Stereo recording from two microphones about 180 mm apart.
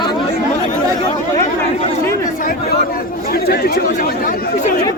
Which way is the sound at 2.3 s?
55° left (ahead or behind).